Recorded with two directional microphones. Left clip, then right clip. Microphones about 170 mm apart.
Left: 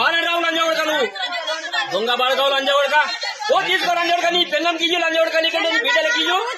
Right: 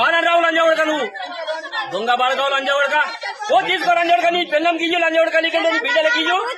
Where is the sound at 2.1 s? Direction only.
Centre (ahead or behind).